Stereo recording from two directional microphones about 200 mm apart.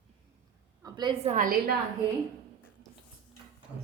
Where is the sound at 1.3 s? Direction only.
45° right (ahead or behind).